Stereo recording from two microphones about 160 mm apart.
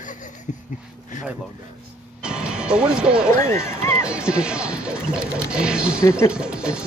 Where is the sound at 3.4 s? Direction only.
15° left (ahead or behind).